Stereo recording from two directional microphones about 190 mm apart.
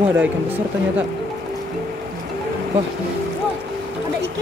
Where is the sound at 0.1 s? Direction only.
10° right (ahead or behind).